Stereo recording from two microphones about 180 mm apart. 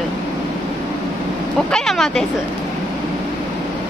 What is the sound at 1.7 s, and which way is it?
Speech, centre (ahead or behind).